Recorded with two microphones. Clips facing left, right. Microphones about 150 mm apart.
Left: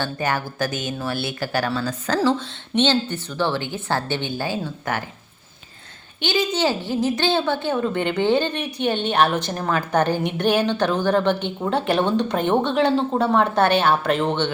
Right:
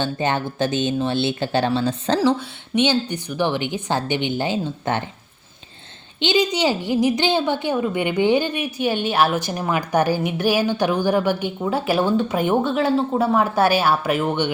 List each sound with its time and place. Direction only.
0.0 s speech: 25° right (ahead or behind)
2.7 s a woman's voice: 10° right (ahead or behind)
6.1 s a woman's voice: 20° right (ahead or behind)